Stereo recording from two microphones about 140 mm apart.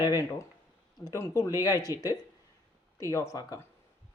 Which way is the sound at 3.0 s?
20° left (ahead or behind).